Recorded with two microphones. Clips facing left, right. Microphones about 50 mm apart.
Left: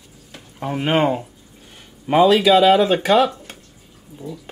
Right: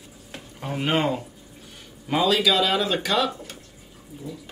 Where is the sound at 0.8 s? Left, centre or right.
Left.